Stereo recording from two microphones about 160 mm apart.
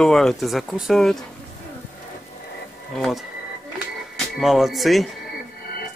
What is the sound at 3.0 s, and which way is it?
Speech, centre (ahead or behind).